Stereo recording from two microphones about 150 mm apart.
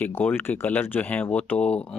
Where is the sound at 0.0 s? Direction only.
10° left (ahead or behind).